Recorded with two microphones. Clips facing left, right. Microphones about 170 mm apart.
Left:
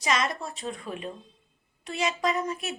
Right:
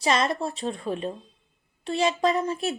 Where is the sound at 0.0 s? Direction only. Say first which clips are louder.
Right 4 dB; 30° right (ahead or behind).